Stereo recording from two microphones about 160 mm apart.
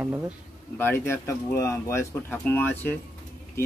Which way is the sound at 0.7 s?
15° left (ahead or behind).